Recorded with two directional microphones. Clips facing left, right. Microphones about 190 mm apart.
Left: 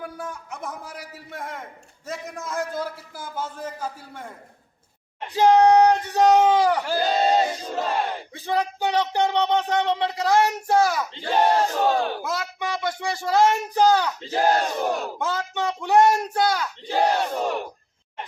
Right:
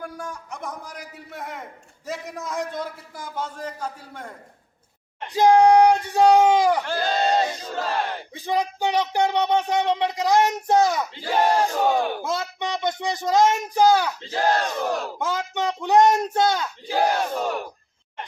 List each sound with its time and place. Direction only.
0.0 s a man's voice: 5° left (ahead or behind)
5.3 s speech: 10° right (ahead or behind)
6.8 s a man's voice: 5° left (ahead or behind)
8.3 s speech: 15° right (ahead or behind)
11.1 s speech: 5° right (ahead or behind)
11.3 s battle cry: 5° left (ahead or behind)
11.6 s speech: 10° right (ahead or behind)
12.2 s speech: 25° right (ahead or behind)
14.3 s battle cry: 15° left (ahead or behind)
15.2 s speech: 10° right (ahead or behind)
16.9 s speech: 5° right (ahead or behind)